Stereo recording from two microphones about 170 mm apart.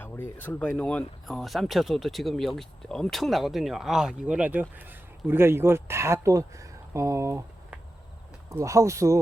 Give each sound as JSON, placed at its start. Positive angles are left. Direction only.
{"t": 0.0, "sound": "speech", "side_deg": 10}